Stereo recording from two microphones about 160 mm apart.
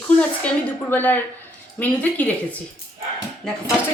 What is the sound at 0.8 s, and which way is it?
A woman's voice, 10° left (ahead or behind).